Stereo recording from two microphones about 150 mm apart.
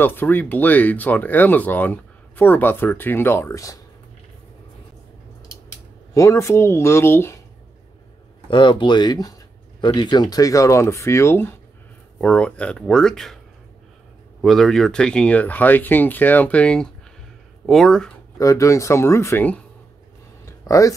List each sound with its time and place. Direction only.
0.0 s speech: 15° left (ahead or behind)
6.1 s speech: 20° left (ahead or behind)
8.5 s speech: 35° left (ahead or behind); by 11.5 s 15° left (ahead or behind)
12.2 s speech: 5° left (ahead or behind)
14.4 s speech: centre (ahead or behind)
18.4 s speech: 20° left (ahead or behind)
20.4 s a sound: 20° left (ahead or behind)